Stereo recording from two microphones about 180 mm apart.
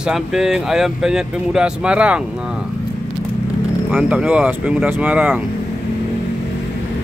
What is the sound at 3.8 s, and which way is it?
Speech, 5° right (ahead or behind).